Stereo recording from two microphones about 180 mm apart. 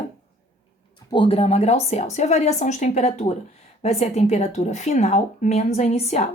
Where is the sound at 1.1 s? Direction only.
30° left (ahead or behind).